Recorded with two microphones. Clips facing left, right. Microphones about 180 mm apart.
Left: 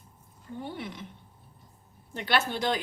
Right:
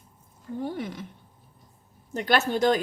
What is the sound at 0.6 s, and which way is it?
Speech, 40° right (ahead or behind).